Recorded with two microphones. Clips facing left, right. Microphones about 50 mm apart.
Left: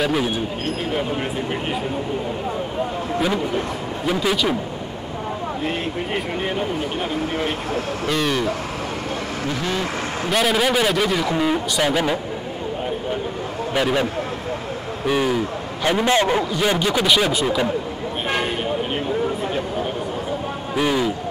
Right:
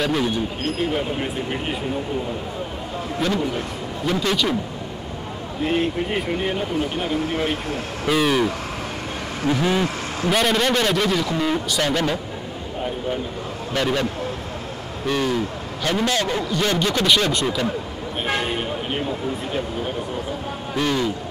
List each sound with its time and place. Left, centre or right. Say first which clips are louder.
0.0 s speech: left 1 dB; centre
4.0 s speech: left 1 dB; centre
5.6 s speech: right 8 dB; centre
9.5 s speech: right 6 dB; centre
10.3 s speech: left 1 dB; centre
13.7 s speech: left 2 dB; centre
15.0 s a man's voice: left 2 dB; centre
16.4 s speech: left 1 dB; centre
20.7 s speech: left 2 dB; centre